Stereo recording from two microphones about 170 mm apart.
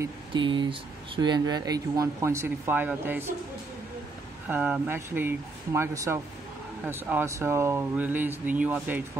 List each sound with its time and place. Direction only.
0.3 s speech: 30° right (ahead or behind); by 3.3 s 10° right (ahead or behind)
4.5 s speech: 10° right (ahead or behind)